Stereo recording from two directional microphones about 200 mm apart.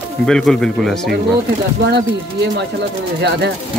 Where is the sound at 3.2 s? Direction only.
55° right (ahead or behind).